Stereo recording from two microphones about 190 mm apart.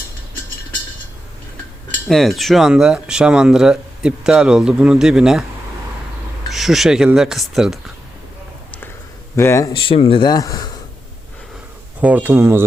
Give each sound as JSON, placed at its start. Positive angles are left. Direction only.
{"t": 2.0, "sound": "speech", "side_deg": 0}
{"t": 6.5, "sound": "speech", "side_deg": 0}
{"t": 9.3, "sound": "speech", "side_deg": 15}
{"t": 9.7, "sound": "speech", "side_deg": 25}
{"t": 11.9, "sound": "speech", "side_deg": -10}